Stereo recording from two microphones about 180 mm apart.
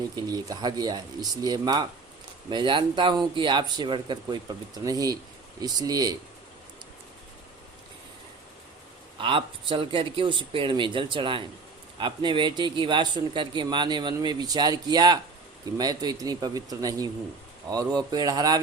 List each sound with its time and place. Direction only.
0.2 s speech: 20° right (ahead or behind)
9.1 s speech: 30° right (ahead or behind)